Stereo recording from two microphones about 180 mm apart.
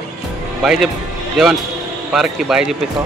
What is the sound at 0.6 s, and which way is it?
Speech, centre (ahead or behind).